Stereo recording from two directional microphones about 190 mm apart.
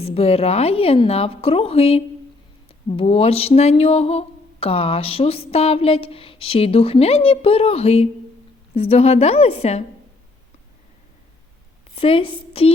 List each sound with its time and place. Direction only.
0.0 s speech: 30° left (ahead or behind)
11.9 s a woman's voice: 30° left (ahead or behind)